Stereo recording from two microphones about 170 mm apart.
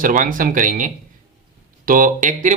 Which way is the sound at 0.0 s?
55° right (ahead or behind).